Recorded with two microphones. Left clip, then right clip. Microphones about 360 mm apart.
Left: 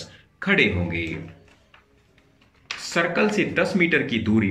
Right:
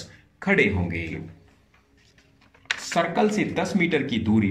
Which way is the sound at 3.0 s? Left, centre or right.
Centre.